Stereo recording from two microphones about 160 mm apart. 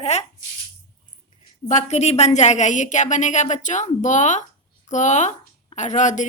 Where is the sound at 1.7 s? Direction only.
45° left (ahead or behind).